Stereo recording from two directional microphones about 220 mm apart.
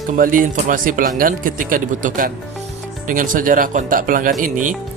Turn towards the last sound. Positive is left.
turn(degrees=-35)  # may be behind; listen again after turning